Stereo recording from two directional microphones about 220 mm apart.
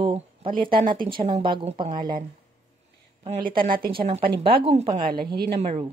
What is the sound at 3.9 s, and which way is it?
Speech, 25° right (ahead or behind).